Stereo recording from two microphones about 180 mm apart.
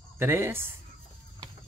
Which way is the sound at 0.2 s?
15° right (ahead or behind).